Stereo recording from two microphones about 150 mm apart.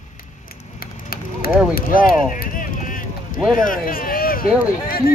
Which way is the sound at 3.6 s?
70° left (ahead or behind).